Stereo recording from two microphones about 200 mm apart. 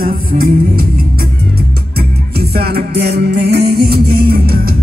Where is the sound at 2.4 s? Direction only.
50° right (ahead or behind).